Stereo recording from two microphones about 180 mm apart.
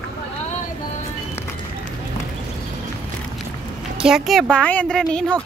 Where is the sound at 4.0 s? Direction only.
Centre (ahead or behind).